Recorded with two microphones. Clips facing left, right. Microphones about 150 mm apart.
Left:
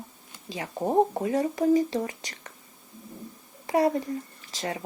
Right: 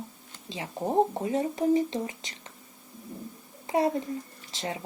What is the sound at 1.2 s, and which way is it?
Speech, 25° right (ahead or behind).